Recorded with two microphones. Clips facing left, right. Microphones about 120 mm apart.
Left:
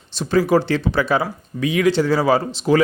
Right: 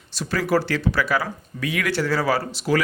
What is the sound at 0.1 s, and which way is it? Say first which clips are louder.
Speech: left 5 dB; 25° left (ahead or behind).